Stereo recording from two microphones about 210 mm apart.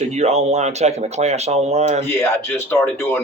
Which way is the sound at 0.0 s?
30° right (ahead or behind).